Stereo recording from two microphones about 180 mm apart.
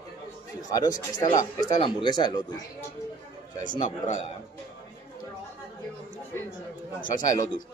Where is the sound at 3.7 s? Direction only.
40° left (ahead or behind).